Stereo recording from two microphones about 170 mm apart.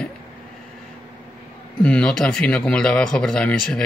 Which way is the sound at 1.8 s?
5° left (ahead or behind).